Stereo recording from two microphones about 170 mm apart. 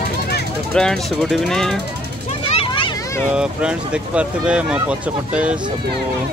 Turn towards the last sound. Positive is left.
turn(degrees=-5)  # may be behind; listen again after turning